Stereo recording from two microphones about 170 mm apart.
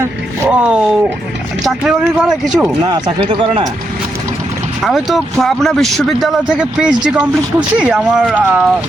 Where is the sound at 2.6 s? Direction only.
25° right (ahead or behind).